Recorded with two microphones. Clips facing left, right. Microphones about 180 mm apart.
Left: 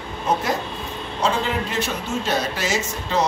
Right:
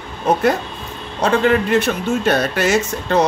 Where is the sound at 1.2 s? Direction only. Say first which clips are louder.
Right 7 dB; 60° right (ahead or behind).